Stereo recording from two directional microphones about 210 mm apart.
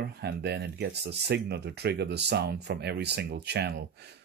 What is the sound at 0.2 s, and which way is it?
Speech, 50° right (ahead or behind).